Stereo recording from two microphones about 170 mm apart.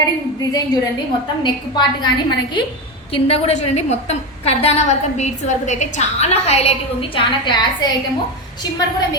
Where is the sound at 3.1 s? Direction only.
35° left (ahead or behind).